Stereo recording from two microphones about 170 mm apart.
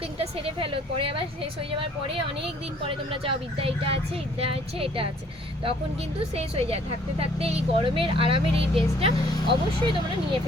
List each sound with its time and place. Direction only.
0.2 s speech: 35° right (ahead or behind)
3.2 s speech: 30° right (ahead or behind)
6.3 s speech: 35° right (ahead or behind)